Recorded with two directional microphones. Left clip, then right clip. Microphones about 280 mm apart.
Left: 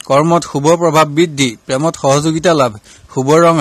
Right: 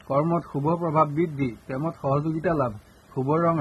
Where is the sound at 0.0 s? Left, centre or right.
Left.